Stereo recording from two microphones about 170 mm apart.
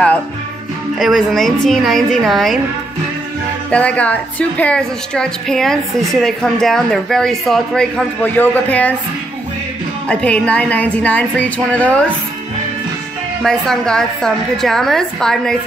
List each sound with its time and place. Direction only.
0.9 s a woman's voice: centre (ahead or behind)
3.7 s a woman's voice: 5° left (ahead or behind)
10.0 s a woman's voice: 5° left (ahead or behind)
13.4 s a woman's voice: 5° left (ahead or behind)